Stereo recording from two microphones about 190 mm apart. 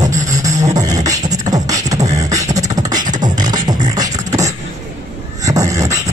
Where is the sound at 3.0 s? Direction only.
45° right (ahead or behind).